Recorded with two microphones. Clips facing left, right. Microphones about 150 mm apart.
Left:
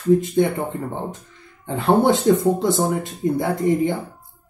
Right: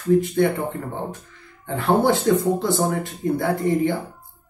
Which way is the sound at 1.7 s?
20° left (ahead or behind).